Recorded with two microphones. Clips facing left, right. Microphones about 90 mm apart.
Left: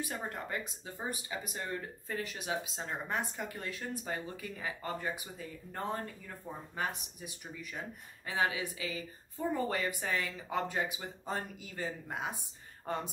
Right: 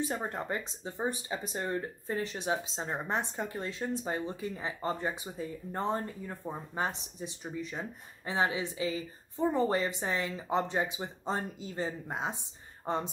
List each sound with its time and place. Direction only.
0.0 s speech: 30° right (ahead or behind)